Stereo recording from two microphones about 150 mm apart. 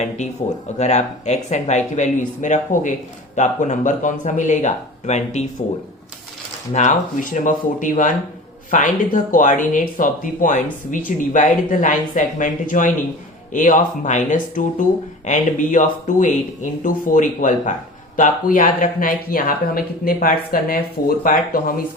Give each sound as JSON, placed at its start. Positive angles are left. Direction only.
{"t": 0.8, "sound": "speech", "side_deg": 50}
{"t": 6.7, "sound": "speech", "side_deg": 55}